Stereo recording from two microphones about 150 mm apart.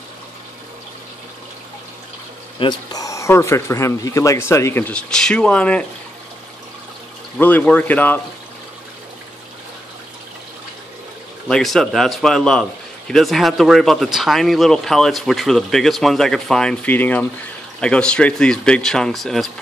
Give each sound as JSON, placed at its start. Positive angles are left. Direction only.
{"t": 2.6, "sound": "speech", "side_deg": 30}
{"t": 7.3, "sound": "speech", "side_deg": 10}
{"t": 11.4, "sound": "speech", "side_deg": 0}